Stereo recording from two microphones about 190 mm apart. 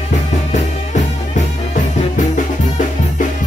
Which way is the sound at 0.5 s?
40° left (ahead or behind).